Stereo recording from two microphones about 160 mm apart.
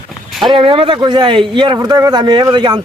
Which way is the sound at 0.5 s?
35° right (ahead or behind).